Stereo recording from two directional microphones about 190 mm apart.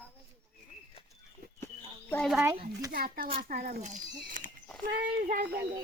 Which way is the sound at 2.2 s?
Centre (ahead or behind).